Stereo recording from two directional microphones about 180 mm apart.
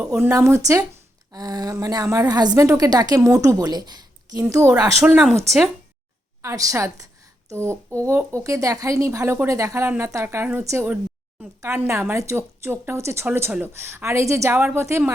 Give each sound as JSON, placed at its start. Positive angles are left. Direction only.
{"t": 0.0, "sound": "a woman's voice", "side_deg": -15}
{"t": 5.0, "sound": "speech", "side_deg": -5}
{"t": 6.4, "sound": "a woman's voice", "side_deg": -15}